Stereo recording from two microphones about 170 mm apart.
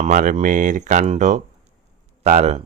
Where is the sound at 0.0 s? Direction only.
50° right (ahead or behind).